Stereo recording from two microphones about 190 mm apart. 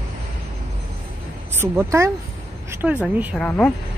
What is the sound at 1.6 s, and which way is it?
Speech, 15° right (ahead or behind).